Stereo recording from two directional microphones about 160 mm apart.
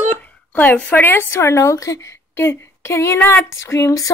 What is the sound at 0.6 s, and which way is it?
Speech, 10° left (ahead or behind).